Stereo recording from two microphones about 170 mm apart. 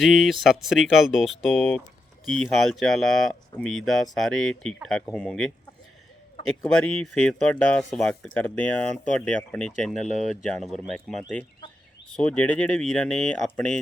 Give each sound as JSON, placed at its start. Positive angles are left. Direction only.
{"t": 0.0, "sound": "speech", "side_deg": 0}
{"t": 6.5, "sound": "speech", "side_deg": 5}
{"t": 11.6, "sound": "fowl", "side_deg": 30}
{"t": 12.1, "sound": "speech", "side_deg": 5}